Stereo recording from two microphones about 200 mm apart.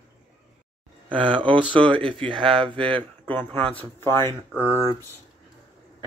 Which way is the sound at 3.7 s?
10° left (ahead or behind).